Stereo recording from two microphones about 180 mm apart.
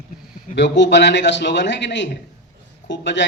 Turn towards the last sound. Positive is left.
turn(degrees=80)